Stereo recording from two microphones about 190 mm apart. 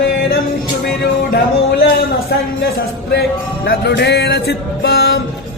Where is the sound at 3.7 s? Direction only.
60° left (ahead or behind).